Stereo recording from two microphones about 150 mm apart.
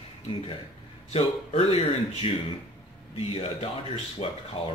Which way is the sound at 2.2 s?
40° left (ahead or behind).